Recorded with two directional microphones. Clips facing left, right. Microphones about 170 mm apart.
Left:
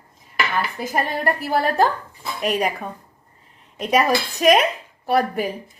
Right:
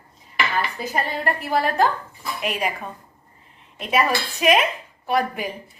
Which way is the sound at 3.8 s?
40° left (ahead or behind).